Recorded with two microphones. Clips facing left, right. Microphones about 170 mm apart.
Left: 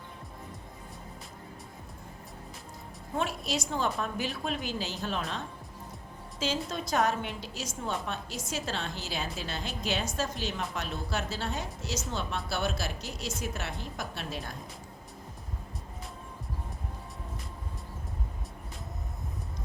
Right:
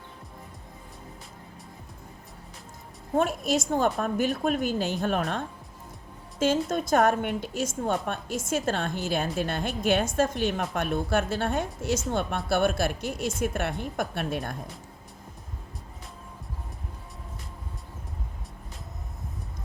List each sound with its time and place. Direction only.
3.2 s a woman's voice: 50° right (ahead or behind)
6.4 s a woman's voice: 50° right (ahead or behind)